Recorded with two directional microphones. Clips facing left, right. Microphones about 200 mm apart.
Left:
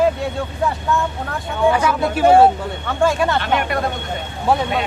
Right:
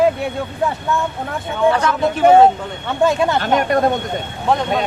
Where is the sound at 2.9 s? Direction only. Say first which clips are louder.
Right 2 dB; 20° right (ahead or behind).